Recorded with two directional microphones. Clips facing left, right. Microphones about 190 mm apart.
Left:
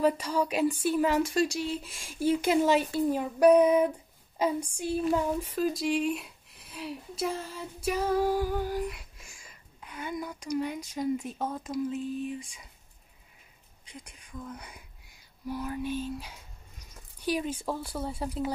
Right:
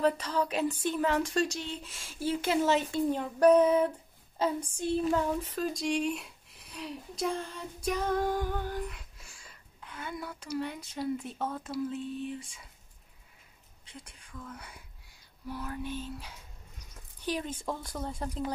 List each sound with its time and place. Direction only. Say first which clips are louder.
0.0 s speech: left 2 dB; 10° left (ahead or behind)
4.4 s a sound: left 2 dB; 15° left (ahead or behind)
11.3 s speech: left 2 dB; 10° left (ahead or behind)
13.8 s speech: left 2 dB; 15° left (ahead or behind)